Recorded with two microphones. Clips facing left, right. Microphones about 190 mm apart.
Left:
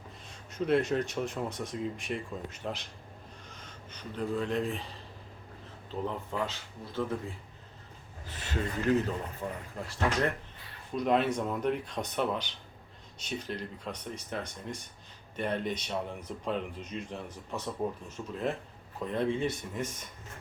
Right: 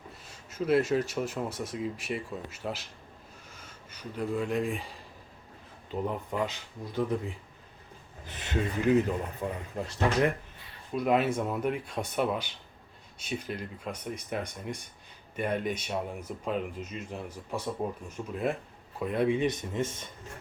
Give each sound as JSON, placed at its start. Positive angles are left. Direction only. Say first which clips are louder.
{"t": 0.3, "sound": "speech", "louder": "right 1 dB", "side_deg": -5}
{"t": 8.3, "sound": "speech", "louder": "right 3 dB", "side_deg": -20}
{"t": 10.9, "sound": "speech", "louder": "right 1 dB", "side_deg": -5}